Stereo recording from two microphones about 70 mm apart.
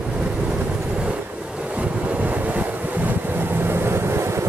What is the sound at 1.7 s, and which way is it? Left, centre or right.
Wind noise, right.